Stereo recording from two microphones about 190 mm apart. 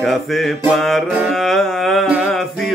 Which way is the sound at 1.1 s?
Centre (ahead or behind).